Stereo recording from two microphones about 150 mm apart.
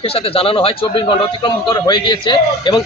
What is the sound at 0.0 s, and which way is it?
Speech, 40° left (ahead or behind).